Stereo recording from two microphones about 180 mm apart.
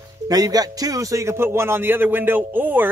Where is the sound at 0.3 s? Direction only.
20° right (ahead or behind).